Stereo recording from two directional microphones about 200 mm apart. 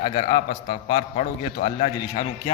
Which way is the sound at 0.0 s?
35° left (ahead or behind).